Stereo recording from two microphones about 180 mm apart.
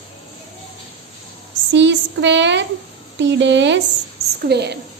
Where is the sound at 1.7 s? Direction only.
85° right.